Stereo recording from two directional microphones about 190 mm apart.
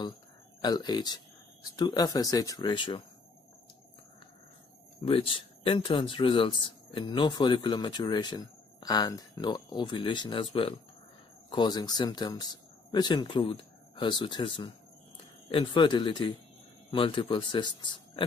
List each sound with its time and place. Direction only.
0.6 s speech: 20° left (ahead or behind)
5.0 s speech: 30° left (ahead or behind)